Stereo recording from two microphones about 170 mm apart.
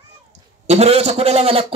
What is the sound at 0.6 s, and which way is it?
A man's voice, 40° right (ahead or behind).